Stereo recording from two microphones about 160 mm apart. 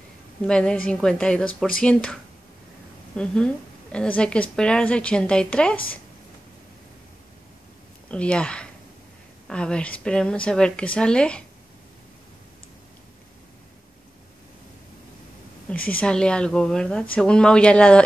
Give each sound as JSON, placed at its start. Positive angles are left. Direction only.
{"t": 0.4, "sound": "a woman's voice", "side_deg": 5}
{"t": 3.2, "sound": "a woman's voice", "side_deg": 5}
{"t": 8.1, "sound": "a woman's voice", "side_deg": 5}
{"t": 15.7, "sound": "a woman's voice", "side_deg": 10}